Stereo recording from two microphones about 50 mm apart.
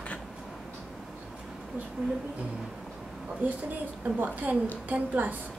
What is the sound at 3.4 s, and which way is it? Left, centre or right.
A woman's voice, right.